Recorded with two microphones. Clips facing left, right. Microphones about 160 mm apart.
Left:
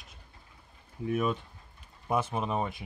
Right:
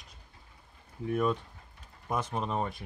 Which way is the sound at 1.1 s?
5° left (ahead or behind).